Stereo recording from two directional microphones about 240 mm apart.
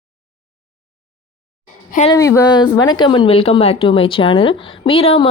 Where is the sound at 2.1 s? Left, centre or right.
Centre.